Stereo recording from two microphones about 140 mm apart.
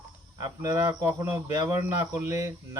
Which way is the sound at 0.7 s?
20° right (ahead or behind).